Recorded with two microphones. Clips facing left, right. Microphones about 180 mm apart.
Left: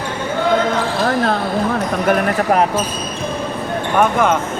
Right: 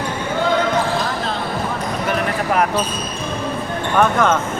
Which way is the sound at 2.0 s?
50° left (ahead or behind).